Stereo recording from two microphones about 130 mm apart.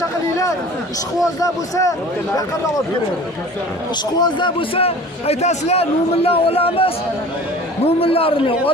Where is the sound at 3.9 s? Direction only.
35° left (ahead or behind).